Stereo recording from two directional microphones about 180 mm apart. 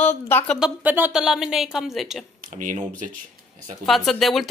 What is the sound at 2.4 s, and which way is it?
Speech, 45° right (ahead or behind).